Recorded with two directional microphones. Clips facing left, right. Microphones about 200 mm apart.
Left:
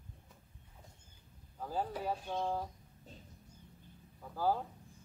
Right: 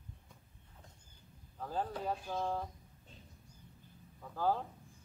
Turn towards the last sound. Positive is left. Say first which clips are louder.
# even
turn(degrees=10)  # may be behind; listen again after turning